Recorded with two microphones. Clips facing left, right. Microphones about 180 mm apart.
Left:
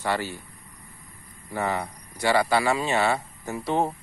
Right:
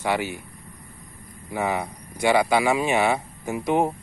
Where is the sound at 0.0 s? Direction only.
15° right (ahead or behind).